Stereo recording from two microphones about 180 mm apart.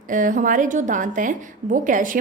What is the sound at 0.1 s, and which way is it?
A woman's voice, 45° right (ahead or behind).